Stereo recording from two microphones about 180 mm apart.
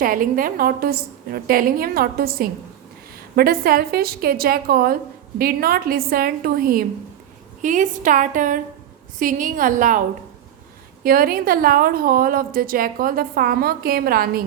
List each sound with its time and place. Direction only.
0.0 s a woman's voice: 50° right (ahead or behind)
11.0 s a woman's voice: 55° right (ahead or behind)